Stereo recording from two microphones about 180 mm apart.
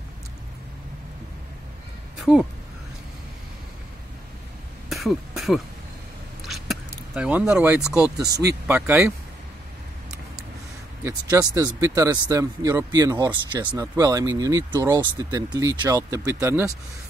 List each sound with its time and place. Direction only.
4.8 s cough: centre (ahead or behind)
6.4 s a sound: centre (ahead or behind)
8.3 s speech: 65° right (ahead or behind)
8.6 s speech: 10° right (ahead or behind)
11.1 s speech: 20° right (ahead or behind)